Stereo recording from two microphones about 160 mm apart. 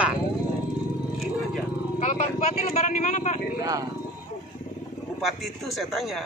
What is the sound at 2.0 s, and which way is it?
Speech, 45° left (ahead or behind).